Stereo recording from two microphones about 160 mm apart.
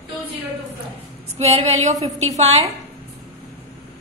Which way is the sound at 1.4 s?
45° right (ahead or behind).